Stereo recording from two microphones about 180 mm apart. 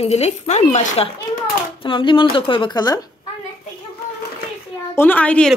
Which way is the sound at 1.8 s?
30° left (ahead or behind).